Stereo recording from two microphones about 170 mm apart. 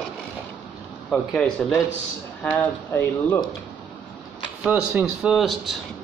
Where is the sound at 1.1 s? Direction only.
Centre (ahead or behind).